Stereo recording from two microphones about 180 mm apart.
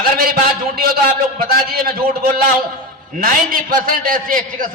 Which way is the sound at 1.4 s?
55° right (ahead or behind).